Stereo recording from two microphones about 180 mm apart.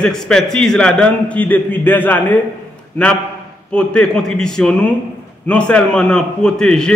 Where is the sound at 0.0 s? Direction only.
5° left (ahead or behind).